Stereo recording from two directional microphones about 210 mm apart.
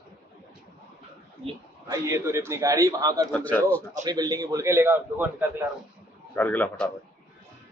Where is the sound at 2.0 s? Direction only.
15° right (ahead or behind).